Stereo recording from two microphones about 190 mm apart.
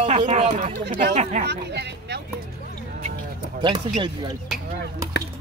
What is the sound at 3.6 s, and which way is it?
Speech, 25° right (ahead or behind).